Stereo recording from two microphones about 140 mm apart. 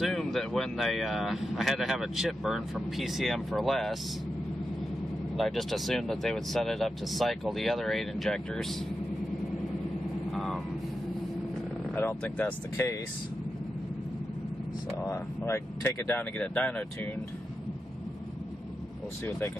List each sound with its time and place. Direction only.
0.0 s speech: centre (ahead or behind)
5.3 s speech: centre (ahead or behind)
10.3 s vehicle: centre (ahead or behind)
11.9 s speech: 15° left (ahead or behind)
15.0 s speech: 20° left (ahead or behind)